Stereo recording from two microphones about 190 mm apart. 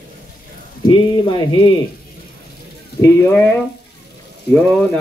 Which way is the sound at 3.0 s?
10° left (ahead or behind).